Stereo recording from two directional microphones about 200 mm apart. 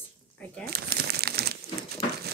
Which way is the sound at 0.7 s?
50° right (ahead or behind).